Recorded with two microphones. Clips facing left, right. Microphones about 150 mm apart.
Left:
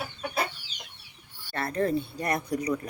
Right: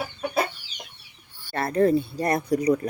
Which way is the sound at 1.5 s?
35° right (ahead or behind).